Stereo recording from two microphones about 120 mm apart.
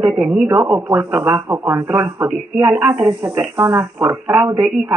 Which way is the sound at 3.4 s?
20° right (ahead or behind).